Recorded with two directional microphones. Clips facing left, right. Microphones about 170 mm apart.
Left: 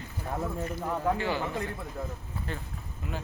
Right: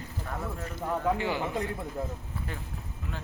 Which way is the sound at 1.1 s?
15° right (ahead or behind).